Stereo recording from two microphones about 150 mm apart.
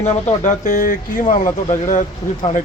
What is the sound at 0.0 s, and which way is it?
Speech, 50° left (ahead or behind).